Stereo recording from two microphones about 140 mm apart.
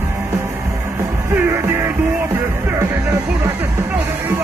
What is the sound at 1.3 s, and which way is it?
Music, 15° right (ahead or behind).